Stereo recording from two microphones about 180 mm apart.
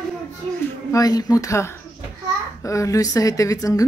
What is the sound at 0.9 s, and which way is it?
A woman's voice, 20° left (ahead or behind).